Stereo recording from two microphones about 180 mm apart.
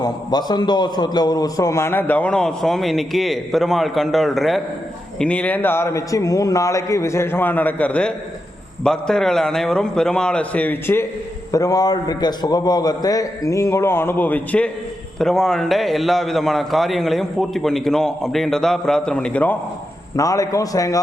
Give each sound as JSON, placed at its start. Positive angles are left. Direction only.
{"t": 0.0, "sound": "a man's voice", "side_deg": 25}